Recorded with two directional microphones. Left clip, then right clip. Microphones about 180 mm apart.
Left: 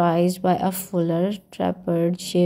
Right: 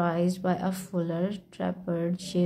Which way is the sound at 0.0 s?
30° left (ahead or behind).